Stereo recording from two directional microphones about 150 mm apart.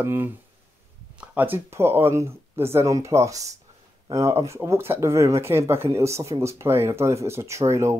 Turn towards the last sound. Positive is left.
turn(degrees=-20)  # may be behind; listen again after turning